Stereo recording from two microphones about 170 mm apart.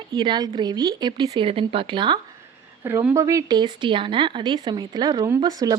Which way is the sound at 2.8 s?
15° right (ahead or behind).